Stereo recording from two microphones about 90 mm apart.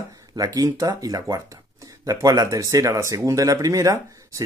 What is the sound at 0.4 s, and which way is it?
Speech, 45° right (ahead or behind).